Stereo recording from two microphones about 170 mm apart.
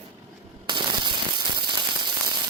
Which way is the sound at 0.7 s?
25° right (ahead or behind).